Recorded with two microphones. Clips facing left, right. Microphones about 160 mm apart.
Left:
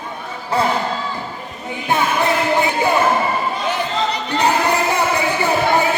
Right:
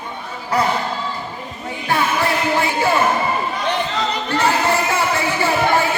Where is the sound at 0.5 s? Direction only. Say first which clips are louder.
Left 1 dB; 25° left (ahead or behind).